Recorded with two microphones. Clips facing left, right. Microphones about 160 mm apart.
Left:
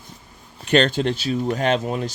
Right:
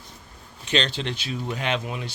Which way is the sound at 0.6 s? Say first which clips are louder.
Left 8 dB; 50° left (ahead or behind).